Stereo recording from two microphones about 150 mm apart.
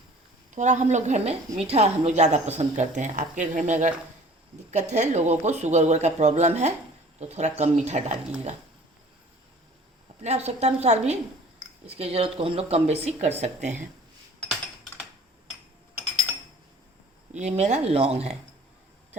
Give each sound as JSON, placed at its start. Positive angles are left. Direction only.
{"t": 0.5, "sound": "a woman's voice", "side_deg": -55}
{"t": 10.2, "sound": "a woman's voice", "side_deg": -45}
{"t": 17.3, "sound": "a woman's voice", "side_deg": -50}